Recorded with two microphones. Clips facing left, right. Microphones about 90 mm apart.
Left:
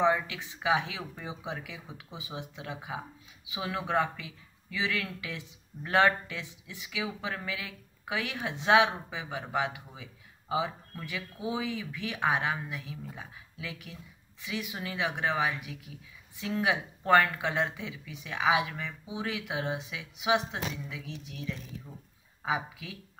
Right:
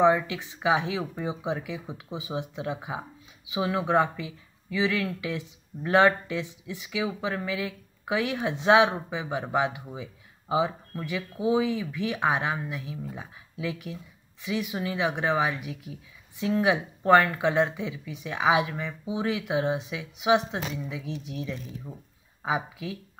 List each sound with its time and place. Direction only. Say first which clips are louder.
0.0 s speech: right 5 dB; 5° right (ahead or behind)
8.8 s speech: right 5 dB; 25° right (ahead or behind); by 20.4 s centre (ahead or behind)
20.5 s speech: right 4 dB; 15° right (ahead or behind)